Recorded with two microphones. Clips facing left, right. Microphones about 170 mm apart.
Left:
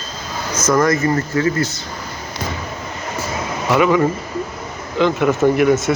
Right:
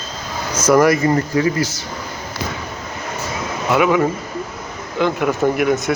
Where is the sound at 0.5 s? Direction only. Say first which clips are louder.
Right 3 dB; 10° right (ahead or behind).